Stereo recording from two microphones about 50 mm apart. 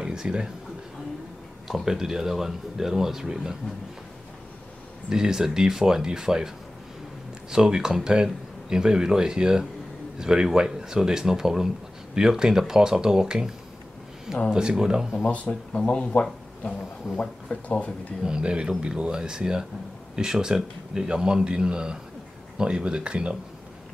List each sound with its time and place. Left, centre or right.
0.0 s a sound: centre
1.7 s speech: centre
5.1 s speech: centre
7.5 s speech: centre
14.5 s speech: centre
15.3 s speech: left
17.2 s speech: left
18.2 s speech: centre